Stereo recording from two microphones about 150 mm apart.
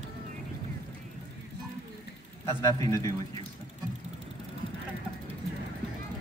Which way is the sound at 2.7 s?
20° left (ahead or behind).